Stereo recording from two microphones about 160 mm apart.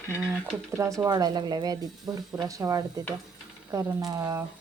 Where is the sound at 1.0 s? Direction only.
25° right (ahead or behind).